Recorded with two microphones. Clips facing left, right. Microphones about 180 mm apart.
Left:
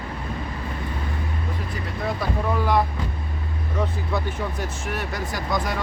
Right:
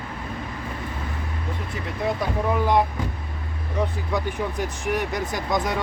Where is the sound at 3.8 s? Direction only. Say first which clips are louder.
Right 1 dB; 15° right (ahead or behind).